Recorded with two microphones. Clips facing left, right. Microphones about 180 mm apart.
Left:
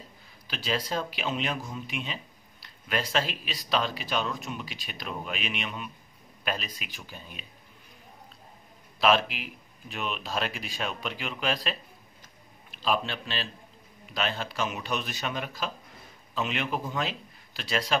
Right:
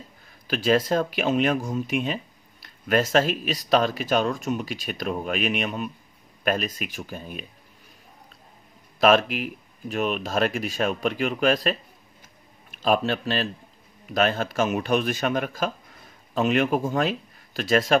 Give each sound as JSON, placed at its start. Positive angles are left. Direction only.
{"t": 0.5, "sound": "speech", "side_deg": -50}
{"t": 9.0, "sound": "speech", "side_deg": -50}
{"t": 12.7, "sound": "speech", "side_deg": -50}